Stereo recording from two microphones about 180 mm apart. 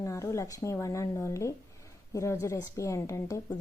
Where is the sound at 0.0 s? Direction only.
15° left (ahead or behind).